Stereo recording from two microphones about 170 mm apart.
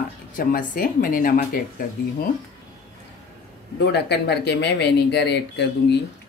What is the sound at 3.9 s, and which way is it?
Speech, 75° left (ahead or behind).